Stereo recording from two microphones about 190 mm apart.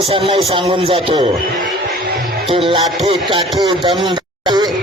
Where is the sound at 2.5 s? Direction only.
30° right (ahead or behind).